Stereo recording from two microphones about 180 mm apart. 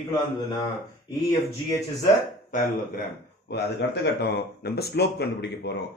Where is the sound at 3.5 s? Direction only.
70° left (ahead or behind).